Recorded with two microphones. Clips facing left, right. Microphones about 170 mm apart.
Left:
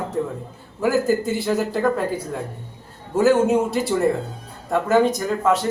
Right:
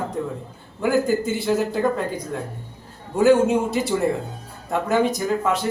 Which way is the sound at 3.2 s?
Centre (ahead or behind).